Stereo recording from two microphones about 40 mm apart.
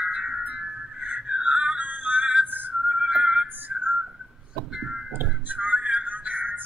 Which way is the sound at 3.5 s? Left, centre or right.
Right.